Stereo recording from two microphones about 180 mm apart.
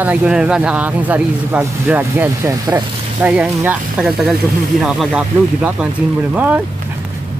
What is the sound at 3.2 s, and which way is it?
Speech, 10° right (ahead or behind).